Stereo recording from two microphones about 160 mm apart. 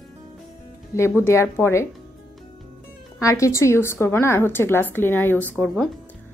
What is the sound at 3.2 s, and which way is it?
A woman's voice, 20° left (ahead or behind).